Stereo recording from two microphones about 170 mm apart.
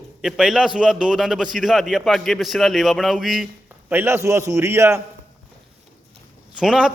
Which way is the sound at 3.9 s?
15° right (ahead or behind).